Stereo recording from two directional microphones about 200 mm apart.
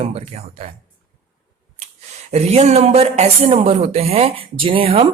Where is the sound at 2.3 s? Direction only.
30° right (ahead or behind).